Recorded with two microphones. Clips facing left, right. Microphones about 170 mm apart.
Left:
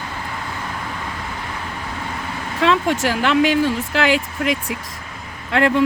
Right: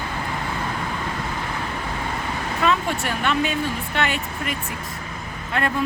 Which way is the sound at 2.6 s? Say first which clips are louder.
Left 5 dB; 90° left.